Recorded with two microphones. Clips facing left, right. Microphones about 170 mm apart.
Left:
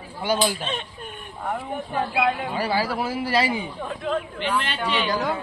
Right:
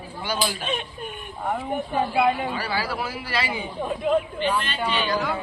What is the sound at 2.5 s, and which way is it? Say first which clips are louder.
Speech: left 4 dB; 20° left (ahead or behind).